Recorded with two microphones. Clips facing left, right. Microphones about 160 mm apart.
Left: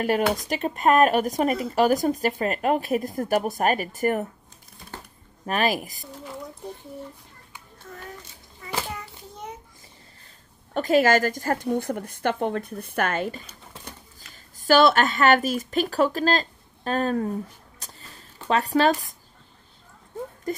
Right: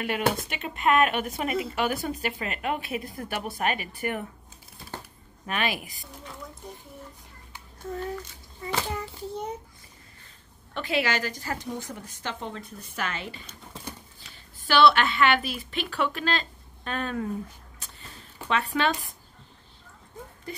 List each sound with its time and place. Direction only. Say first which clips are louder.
0.0 s speech: left 4 dB; 40° left (ahead or behind)
5.5 s speech: left 6 dB; 40° left (ahead or behind)
10.7 s a woman's voice: left 9 dB; 45° left (ahead or behind)
14.6 s speech: left 3 dB; 40° left (ahead or behind)
18.5 s speech: left 6 dB; 40° left (ahead or behind)
20.5 s a sound: left 9 dB; 45° left (ahead or behind)